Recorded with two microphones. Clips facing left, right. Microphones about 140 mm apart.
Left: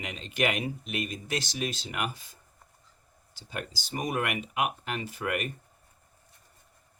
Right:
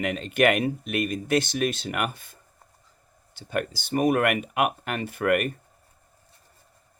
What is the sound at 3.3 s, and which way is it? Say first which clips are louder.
Speech: right 10 dB; 60° right (ahead or behind).